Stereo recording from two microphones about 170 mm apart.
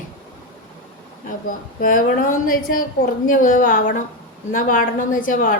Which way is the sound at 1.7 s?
50° left (ahead or behind).